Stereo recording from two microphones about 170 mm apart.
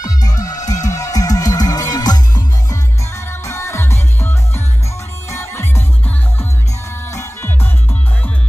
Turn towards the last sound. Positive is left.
turn(degrees=15)  # may be behind; listen again after turning